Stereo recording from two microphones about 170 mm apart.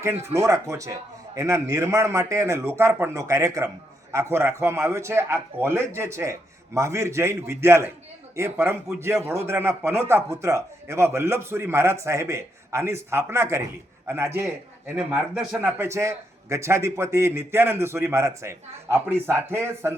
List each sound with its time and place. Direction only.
0.0 s a man's voice: 15° right (ahead or behind)